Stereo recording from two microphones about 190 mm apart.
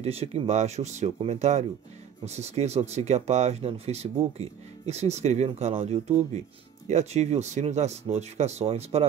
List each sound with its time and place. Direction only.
0.0 s speech: 35° right (ahead or behind)